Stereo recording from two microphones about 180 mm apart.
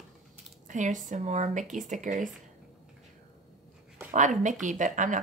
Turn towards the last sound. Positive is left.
turn(degrees=-45)  # may be behind; listen again after turning